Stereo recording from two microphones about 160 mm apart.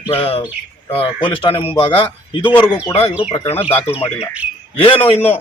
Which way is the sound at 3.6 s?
15° left (ahead or behind).